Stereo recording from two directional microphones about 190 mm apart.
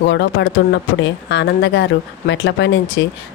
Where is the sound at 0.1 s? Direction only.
70° left (ahead or behind).